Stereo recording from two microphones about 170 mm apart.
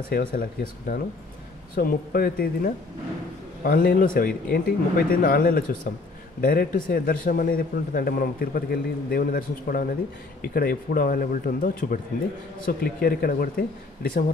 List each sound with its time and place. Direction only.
0.1 s a man's voice: 60° left (ahead or behind)